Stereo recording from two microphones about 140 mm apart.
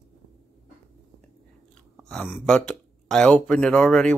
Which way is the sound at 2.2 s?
15° left (ahead or behind).